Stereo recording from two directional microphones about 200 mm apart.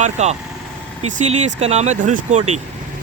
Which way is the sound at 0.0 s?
35° right (ahead or behind).